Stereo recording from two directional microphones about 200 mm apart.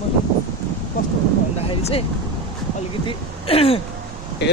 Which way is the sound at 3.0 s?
30° left (ahead or behind).